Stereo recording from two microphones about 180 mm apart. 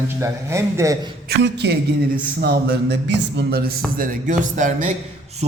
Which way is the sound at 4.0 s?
45° right (ahead or behind).